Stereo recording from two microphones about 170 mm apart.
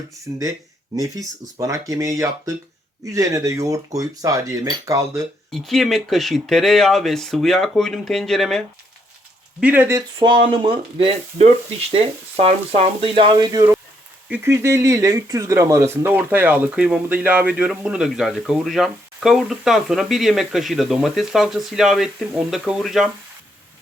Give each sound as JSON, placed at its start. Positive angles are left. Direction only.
{"t": 0.9, "sound": "speech", "side_deg": -20}
{"t": 5.5, "sound": "speech", "side_deg": 0}
{"t": 9.6, "sound": "speech", "side_deg": -10}
{"t": 10.2, "sound": "speech", "side_deg": -30}
{"t": 14.3, "sound": "speech", "side_deg": -10}